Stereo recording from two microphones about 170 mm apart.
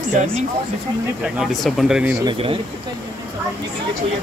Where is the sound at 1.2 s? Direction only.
Centre (ahead or behind).